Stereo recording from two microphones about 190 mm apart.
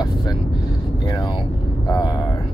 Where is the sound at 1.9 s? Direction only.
25° left (ahead or behind).